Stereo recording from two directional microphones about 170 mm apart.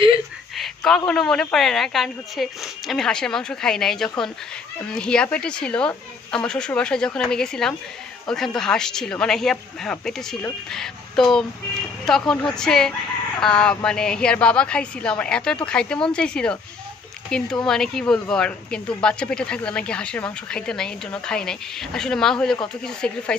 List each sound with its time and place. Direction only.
0.6 s speech: 5° left (ahead or behind)